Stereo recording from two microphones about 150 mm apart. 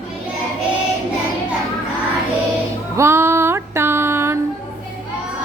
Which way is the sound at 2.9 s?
20° right (ahead or behind).